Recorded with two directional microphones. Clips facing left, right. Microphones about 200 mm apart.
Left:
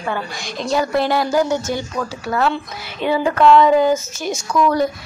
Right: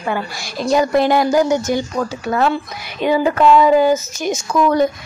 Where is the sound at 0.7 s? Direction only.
15° right (ahead or behind).